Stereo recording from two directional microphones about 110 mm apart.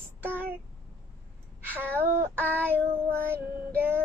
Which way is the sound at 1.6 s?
20° right (ahead or behind).